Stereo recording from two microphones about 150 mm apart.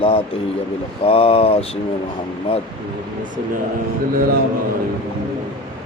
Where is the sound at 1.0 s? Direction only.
40° left (ahead or behind).